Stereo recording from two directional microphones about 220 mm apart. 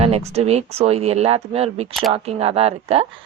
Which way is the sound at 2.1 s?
25° right (ahead or behind).